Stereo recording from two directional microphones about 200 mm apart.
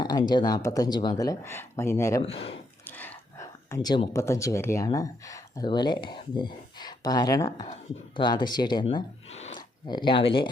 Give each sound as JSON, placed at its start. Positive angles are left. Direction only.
{"t": 0.0, "sound": "speech", "side_deg": 20}
{"t": 2.2, "sound": "speech", "side_deg": 30}
{"t": 2.8, "sound": "speech", "side_deg": 10}
{"t": 9.6, "sound": "a sound", "side_deg": 20}